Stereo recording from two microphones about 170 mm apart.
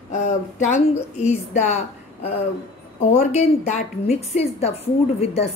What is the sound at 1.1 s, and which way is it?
A woman's voice, 45° left (ahead or behind).